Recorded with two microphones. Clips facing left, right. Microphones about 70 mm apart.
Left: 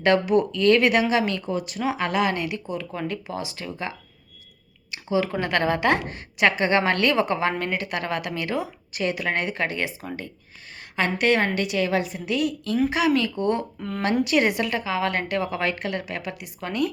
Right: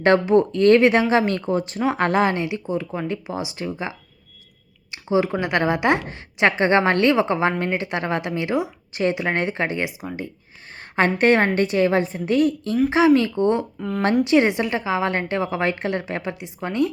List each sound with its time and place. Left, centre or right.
0.0 s a woman's voice: right
10.9 s a woman's voice: right
13.7 s speech: centre
14.3 s a woman's voice: right